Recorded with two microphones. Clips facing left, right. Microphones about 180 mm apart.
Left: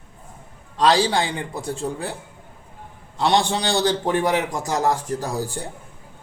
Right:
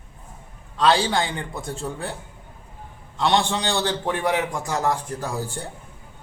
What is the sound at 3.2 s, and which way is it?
A man's voice, 35° left (ahead or behind).